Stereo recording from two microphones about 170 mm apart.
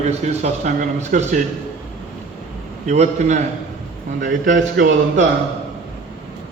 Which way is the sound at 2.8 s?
40° right (ahead or behind).